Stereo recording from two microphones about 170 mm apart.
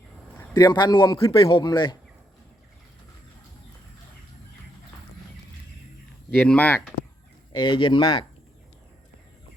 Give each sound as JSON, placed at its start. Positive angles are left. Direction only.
{"t": 0.5, "sound": "a man's voice", "side_deg": 25}
{"t": 6.3, "sound": "speech", "side_deg": 10}
{"t": 7.5, "sound": "a man's voice", "side_deg": 30}